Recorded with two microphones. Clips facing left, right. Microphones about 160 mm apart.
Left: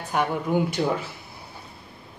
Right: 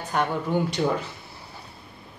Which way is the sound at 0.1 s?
10° left (ahead or behind).